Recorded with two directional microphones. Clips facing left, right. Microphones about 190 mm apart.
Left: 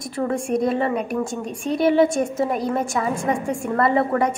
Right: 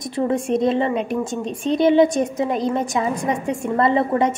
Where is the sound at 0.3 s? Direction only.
20° right (ahead or behind).